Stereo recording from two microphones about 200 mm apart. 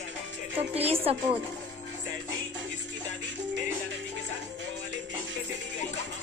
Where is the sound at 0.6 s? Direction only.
30° right (ahead or behind).